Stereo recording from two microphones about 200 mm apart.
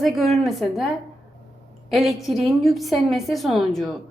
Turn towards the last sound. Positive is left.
turn(degrees=0)  # may be behind; listen again after turning